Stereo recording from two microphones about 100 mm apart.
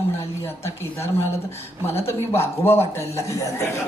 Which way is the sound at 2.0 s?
25° left (ahead or behind).